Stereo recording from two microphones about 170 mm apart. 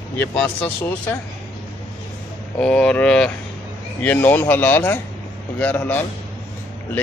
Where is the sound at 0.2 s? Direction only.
10° left (ahead or behind).